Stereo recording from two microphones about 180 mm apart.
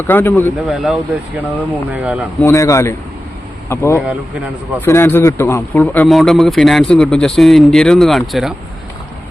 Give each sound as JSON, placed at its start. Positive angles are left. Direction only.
{"t": 0.1, "sound": "speech", "side_deg": 10}
{"t": 0.7, "sound": "a man's voice", "side_deg": -5}
{"t": 2.4, "sound": "a man's voice", "side_deg": 15}